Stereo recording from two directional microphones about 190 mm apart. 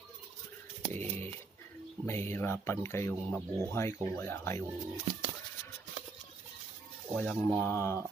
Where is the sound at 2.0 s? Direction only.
10° left (ahead or behind).